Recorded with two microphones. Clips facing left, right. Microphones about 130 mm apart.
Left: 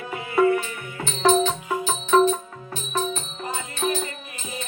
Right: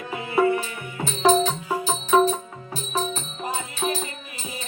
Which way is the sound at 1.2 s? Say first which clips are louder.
Even; 10° right (ahead or behind).